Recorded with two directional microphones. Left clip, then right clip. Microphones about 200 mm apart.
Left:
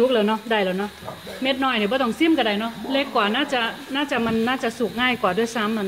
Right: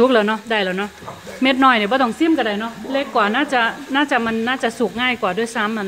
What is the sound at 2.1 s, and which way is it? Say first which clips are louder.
A woman's voice: right 2 dB; centre (ahead or behind).